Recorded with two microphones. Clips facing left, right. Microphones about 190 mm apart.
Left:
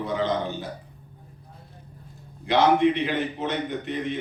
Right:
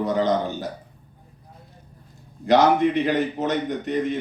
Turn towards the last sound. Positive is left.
turn(degrees=-45)  # may be behind; listen again after turning